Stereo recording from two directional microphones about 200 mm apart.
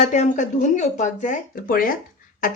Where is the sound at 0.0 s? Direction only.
40° left (ahead or behind).